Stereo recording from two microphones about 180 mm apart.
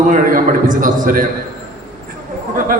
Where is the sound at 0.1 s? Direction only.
50° right (ahead or behind).